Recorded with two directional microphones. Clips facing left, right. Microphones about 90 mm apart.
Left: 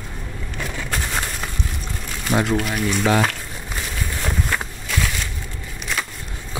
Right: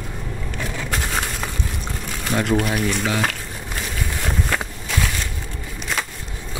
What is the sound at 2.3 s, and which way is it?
Speech, 5° left (ahead or behind).